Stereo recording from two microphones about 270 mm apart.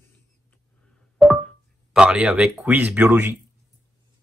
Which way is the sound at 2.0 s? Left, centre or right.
Centre.